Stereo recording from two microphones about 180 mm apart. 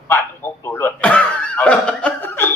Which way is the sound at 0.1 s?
10° left (ahead or behind).